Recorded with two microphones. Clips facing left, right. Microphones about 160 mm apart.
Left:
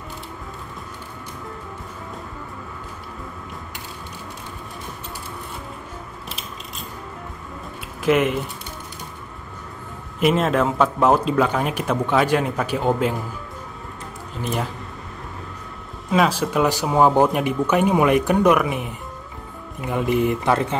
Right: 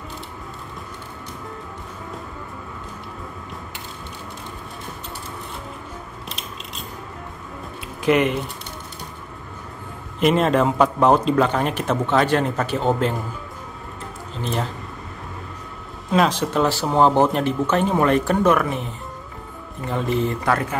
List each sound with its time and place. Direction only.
8.0 s a man's voice: centre (ahead or behind)
10.2 s a man's voice: centre (ahead or behind)
14.4 s a man's voice: 5° left (ahead or behind)
16.1 s speech: 5° left (ahead or behind); by 20.7 s 25° left (ahead or behind)